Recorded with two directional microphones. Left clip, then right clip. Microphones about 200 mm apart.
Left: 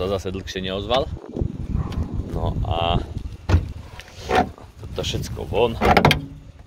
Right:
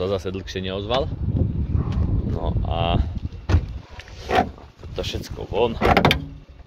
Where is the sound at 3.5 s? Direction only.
35° left (ahead or behind).